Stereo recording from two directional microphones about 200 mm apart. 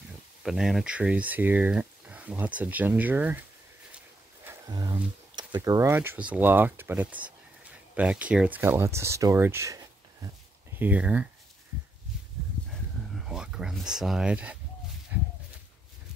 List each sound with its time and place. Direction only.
0.4 s speech: 5° right (ahead or behind)
4.5 s speech: 20° right (ahead or behind)
13.1 s a sound: 5° right (ahead or behind)